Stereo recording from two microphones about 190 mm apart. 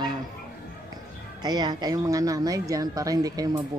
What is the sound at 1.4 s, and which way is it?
A woman's voice, 20° right (ahead or behind).